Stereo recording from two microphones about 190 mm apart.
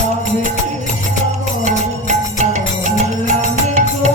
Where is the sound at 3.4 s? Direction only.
40° right (ahead or behind).